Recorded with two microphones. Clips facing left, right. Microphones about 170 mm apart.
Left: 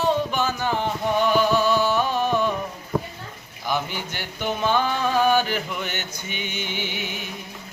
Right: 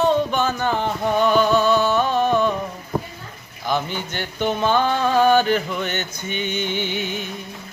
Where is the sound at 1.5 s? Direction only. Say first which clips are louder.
Right 3 dB; 10° left (ahead or behind).